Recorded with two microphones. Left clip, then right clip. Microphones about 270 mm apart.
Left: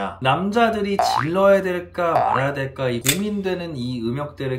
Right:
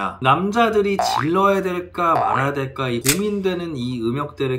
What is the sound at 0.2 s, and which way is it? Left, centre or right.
Speech, centre.